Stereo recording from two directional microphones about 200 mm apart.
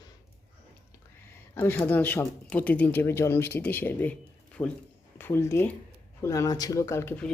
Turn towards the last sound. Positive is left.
turn(degrees=10)  # may be behind; listen again after turning